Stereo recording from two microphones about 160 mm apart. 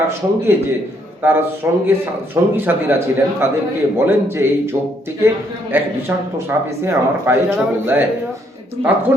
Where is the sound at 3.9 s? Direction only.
15° right (ahead or behind).